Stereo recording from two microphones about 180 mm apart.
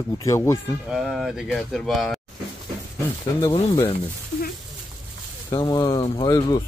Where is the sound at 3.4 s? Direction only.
25° left (ahead or behind).